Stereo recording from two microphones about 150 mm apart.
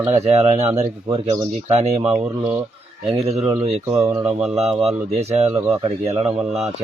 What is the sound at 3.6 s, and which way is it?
Speech, 45° right (ahead or behind).